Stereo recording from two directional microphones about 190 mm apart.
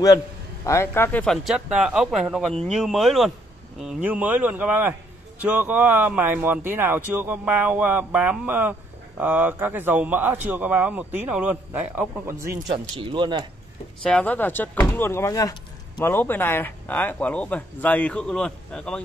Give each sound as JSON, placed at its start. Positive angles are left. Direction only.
{"t": 0.7, "sound": "speech", "side_deg": 15}
{"t": 12.6, "sound": "speech", "side_deg": -25}
{"t": 14.0, "sound": "speech", "side_deg": 5}